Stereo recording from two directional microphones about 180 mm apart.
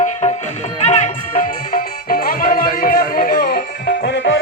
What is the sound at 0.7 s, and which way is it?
Speech, 40° left (ahead or behind).